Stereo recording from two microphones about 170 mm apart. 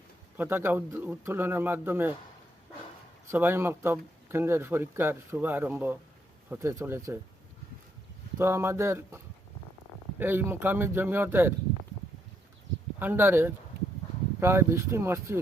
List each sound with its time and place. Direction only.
0.3 s speech: 15° right (ahead or behind)
3.3 s speech: 15° right (ahead or behind)
8.4 s speech: 15° right (ahead or behind)
13.0 s speech: 15° right (ahead or behind)